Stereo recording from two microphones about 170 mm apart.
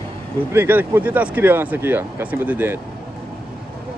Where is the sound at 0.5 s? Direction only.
10° right (ahead or behind).